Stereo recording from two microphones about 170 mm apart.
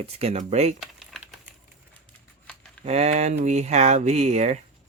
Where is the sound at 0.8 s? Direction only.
Centre (ahead or behind).